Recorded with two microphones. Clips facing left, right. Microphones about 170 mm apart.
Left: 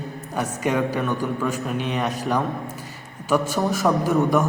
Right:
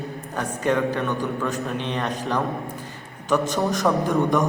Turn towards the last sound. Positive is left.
turn(degrees=5)  # may be behind; listen again after turning